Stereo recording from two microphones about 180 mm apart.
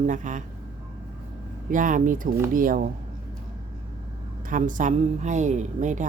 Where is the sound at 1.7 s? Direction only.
45° right (ahead or behind).